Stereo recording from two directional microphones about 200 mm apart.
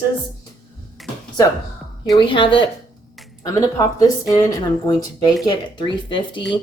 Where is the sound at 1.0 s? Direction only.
Centre (ahead or behind).